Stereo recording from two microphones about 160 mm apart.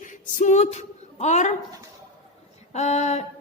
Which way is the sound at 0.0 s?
55° left (ahead or behind).